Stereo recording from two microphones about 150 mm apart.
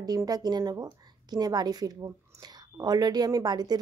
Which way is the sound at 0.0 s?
25° right (ahead or behind).